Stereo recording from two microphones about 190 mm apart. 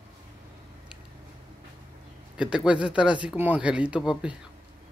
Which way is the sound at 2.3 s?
5° right (ahead or behind).